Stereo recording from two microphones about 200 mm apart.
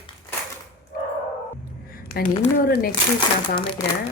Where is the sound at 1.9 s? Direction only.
50° left (ahead or behind).